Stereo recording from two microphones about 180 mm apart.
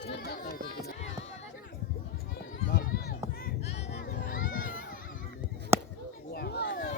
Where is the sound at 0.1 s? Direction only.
60° left (ahead or behind).